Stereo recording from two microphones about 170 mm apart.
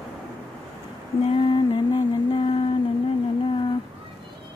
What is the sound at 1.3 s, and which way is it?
Music, 30° left (ahead or behind).